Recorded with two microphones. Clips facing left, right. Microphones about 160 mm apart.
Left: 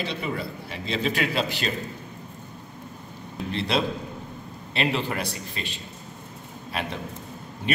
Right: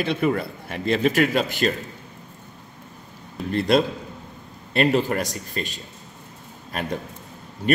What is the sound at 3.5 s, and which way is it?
Speech, 50° right (ahead or behind).